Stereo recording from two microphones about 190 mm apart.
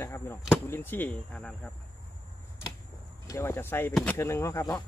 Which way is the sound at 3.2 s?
15° left (ahead or behind).